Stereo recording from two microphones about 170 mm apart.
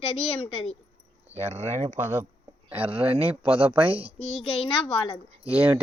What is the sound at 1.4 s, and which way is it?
A man's voice, 40° right (ahead or behind).